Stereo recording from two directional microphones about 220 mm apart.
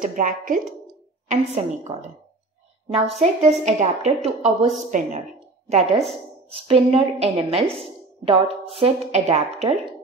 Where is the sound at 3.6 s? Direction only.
30° right (ahead or behind).